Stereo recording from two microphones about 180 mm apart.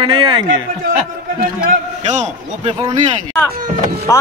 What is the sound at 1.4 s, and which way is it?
A man's voice, 45° right (ahead or behind).